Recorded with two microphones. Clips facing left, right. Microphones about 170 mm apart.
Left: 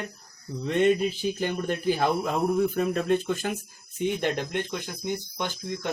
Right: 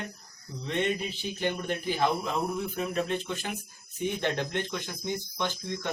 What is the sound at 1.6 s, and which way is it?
Speech, 45° left (ahead or behind).